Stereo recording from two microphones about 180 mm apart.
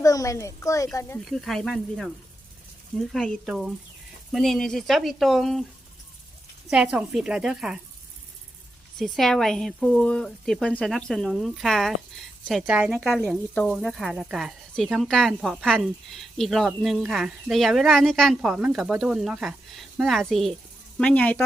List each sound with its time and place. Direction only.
0.0 s speech: 20° left (ahead or behind)
1.2 s speech: centre (ahead or behind)
6.7 s speech: 5° right (ahead or behind)
9.0 s speech: centre (ahead or behind)